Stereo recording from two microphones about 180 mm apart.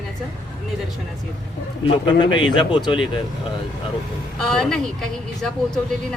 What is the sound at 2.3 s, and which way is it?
Speech, 25° left (ahead or behind).